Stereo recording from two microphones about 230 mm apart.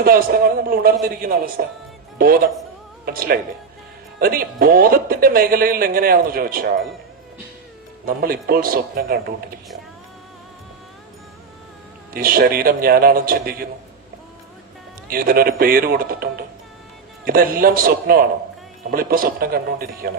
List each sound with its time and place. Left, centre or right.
0.0 s a man's voice: right
8.0 s a man's voice: right
12.1 s a man's voice: right
15.1 s a man's voice: right